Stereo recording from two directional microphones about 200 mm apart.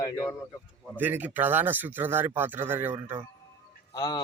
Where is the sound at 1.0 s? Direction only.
10° right (ahead or behind).